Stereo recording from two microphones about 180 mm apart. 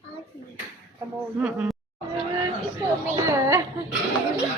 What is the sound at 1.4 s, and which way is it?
Speech, 5° right (ahead or behind).